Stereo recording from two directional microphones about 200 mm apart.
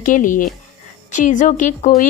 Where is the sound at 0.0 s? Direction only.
40° left (ahead or behind).